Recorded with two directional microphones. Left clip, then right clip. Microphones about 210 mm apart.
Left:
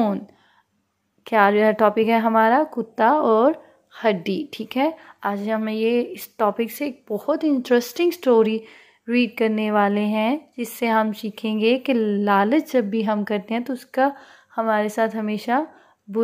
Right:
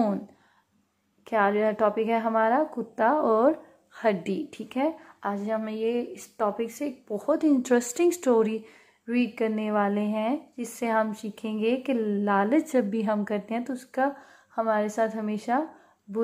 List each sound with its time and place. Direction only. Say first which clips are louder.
1.2 s speech: left 7 dB; 35° left (ahead or behind)
7.2 s a woman's voice: left 3 dB; 10° left (ahead or behind); by 15.6 s 30° left (ahead or behind)